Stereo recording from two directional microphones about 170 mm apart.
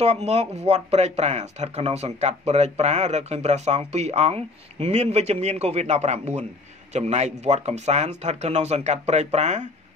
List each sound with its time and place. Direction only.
0.0 s speech: 40° right (ahead or behind)